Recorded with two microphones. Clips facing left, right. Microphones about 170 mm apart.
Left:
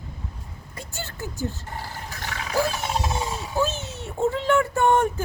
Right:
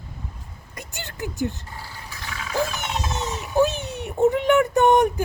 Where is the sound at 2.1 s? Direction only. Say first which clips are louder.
Left 1 dB; 40° left (ahead or behind).